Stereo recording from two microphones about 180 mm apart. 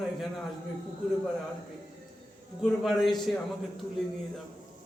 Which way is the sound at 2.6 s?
Centre (ahead or behind).